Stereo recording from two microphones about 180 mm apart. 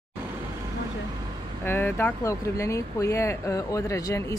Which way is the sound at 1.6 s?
10° left (ahead or behind).